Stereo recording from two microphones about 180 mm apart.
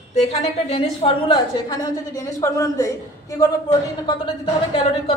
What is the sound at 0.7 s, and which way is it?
A man's voice, 30° left (ahead or behind).